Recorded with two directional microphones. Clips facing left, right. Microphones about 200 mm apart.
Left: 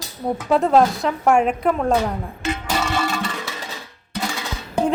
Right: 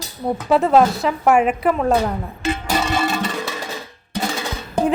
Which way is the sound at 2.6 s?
20° right (ahead or behind).